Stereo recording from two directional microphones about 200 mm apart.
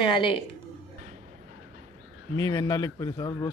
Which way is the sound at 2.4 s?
20° left (ahead or behind).